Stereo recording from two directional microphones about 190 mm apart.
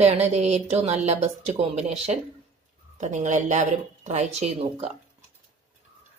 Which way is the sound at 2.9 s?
40° right (ahead or behind).